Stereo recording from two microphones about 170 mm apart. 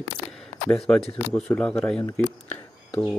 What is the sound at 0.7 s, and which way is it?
Speech, centre (ahead or behind).